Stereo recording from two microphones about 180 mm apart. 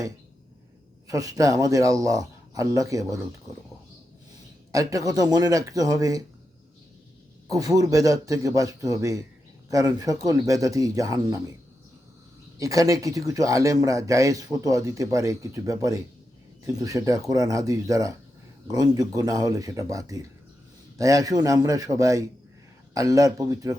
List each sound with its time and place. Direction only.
1.0 s speech: 20° right (ahead or behind)
4.7 s speech: 20° right (ahead or behind)
7.5 s speech: 20° right (ahead or behind)
12.5 s speech: 20° right (ahead or behind)